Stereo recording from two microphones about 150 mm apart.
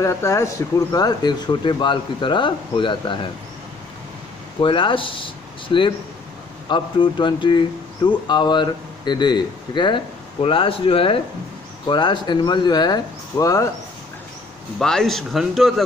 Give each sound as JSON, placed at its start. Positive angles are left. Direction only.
{"t": 0.0, "sound": "speech", "side_deg": 20}
{"t": 4.6, "sound": "speech", "side_deg": 35}
{"t": 14.8, "sound": "speech", "side_deg": 5}